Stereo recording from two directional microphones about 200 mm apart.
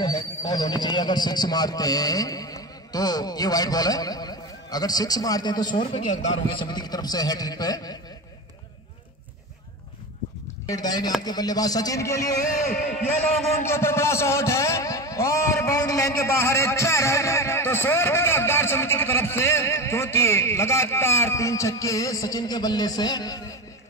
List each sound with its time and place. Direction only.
0.0 s speech: 20° left (ahead or behind)
6.0 s a man's voice: 35° left (ahead or behind)
6.6 s a man's voice: 20° left (ahead or behind)
10.7 s a man's voice: 20° left (ahead or behind)
13.6 s a man's voice: 10° left (ahead or behind)